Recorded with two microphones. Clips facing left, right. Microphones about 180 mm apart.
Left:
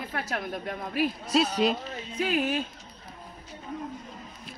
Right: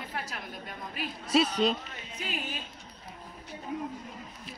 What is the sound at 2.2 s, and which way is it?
Speech, 65° left (ahead or behind).